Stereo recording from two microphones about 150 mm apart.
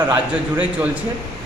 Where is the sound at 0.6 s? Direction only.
10° right (ahead or behind).